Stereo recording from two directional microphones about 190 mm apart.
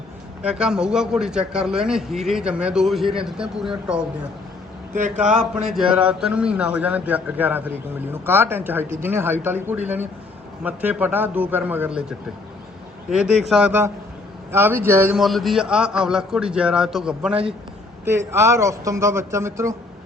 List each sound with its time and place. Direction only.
0.4 s a man's voice: 5° right (ahead or behind)
5.4 s a man's voice: 5° right (ahead or behind)
13.1 s a man's voice: 5° right (ahead or behind)
15.2 s a man's voice: centre (ahead or behind)
18.3 s a man's voice: 15° right (ahead or behind)